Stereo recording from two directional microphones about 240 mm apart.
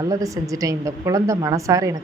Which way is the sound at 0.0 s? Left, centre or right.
Centre.